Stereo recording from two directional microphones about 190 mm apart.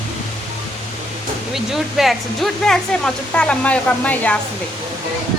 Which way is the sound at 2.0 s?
Centre (ahead or behind).